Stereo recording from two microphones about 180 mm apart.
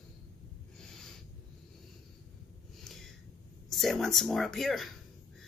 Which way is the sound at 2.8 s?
Centre (ahead or behind).